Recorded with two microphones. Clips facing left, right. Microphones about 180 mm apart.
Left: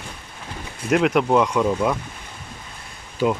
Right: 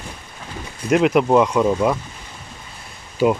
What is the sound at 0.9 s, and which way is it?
Speech, centre (ahead or behind).